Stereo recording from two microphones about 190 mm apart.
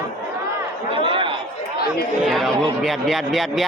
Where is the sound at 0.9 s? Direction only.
25° right (ahead or behind).